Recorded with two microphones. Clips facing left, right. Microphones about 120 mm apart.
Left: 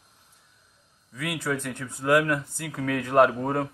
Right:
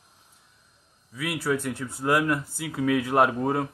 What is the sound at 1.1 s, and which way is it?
Speech, 5° right (ahead or behind).